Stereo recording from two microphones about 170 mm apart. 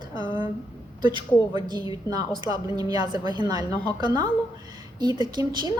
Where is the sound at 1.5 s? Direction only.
25° right (ahead or behind).